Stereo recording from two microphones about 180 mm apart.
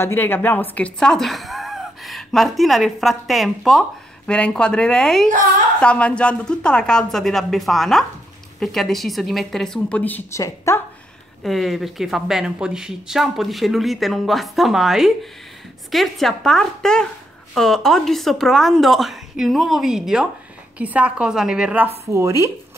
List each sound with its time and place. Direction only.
0.0 s speech: 10° left (ahead or behind)
11.4 s a woman's voice: centre (ahead or behind); by 22.5 s 15° right (ahead or behind)